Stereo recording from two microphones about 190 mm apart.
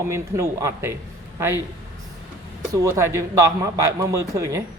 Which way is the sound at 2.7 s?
15° right (ahead or behind).